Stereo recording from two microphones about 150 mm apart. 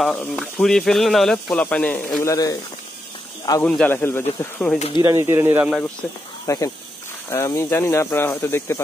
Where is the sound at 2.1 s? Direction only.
25° left (ahead or behind).